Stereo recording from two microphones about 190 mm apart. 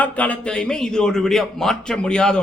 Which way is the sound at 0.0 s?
5° left (ahead or behind).